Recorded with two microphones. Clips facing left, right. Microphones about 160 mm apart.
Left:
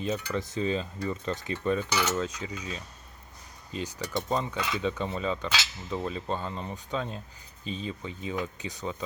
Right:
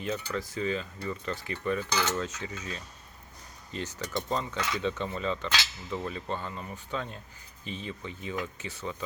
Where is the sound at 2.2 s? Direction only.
15° left (ahead or behind).